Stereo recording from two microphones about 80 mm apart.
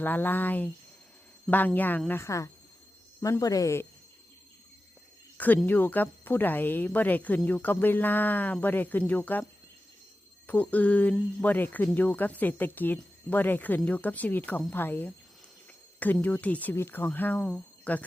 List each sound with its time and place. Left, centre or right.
0.0 s speech: left
2.0 s speech: left
5.6 s speech: left
10.4 s speech: centre